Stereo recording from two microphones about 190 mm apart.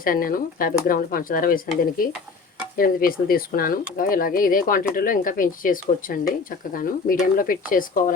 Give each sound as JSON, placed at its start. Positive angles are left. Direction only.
{"t": 0.0, "sound": "speech", "side_deg": 50}
{"t": 2.7, "sound": "speech", "side_deg": 50}